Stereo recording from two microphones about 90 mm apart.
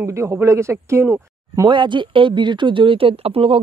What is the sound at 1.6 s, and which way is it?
Speech, 60° right (ahead or behind).